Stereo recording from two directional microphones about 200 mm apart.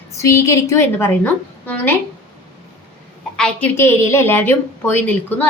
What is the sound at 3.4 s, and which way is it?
A woman's voice, 5° left (ahead or behind).